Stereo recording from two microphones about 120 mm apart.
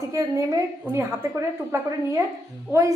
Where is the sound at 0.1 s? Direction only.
25° right (ahead or behind).